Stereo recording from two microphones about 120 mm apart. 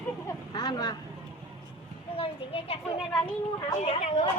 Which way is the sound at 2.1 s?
55° left (ahead or behind).